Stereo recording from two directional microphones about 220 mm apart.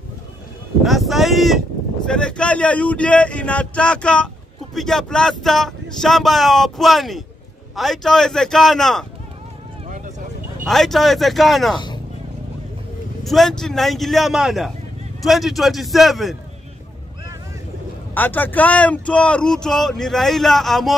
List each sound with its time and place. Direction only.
0.8 s a sound: centre (ahead or behind)
2.0 s speech: 5° left (ahead or behind)
9.8 s vehicle: 35° right (ahead or behind)
10.7 s speech: centre (ahead or behind)
13.2 s speech: centre (ahead or behind)
18.1 s speech: 10° left (ahead or behind)